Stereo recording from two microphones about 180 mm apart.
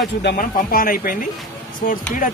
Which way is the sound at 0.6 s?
55° left (ahead or behind).